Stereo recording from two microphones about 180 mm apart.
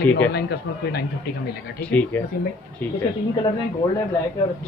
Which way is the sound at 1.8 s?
10° left (ahead or behind).